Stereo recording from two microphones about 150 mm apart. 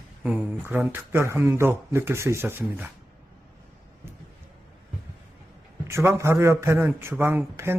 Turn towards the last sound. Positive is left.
turn(degrees=-15)  # may be behind; listen again after turning